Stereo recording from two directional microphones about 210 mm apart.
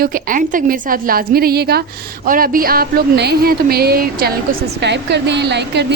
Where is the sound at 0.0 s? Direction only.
40° right (ahead or behind).